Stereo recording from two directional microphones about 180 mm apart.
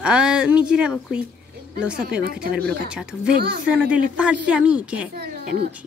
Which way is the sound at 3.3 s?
60° right (ahead or behind).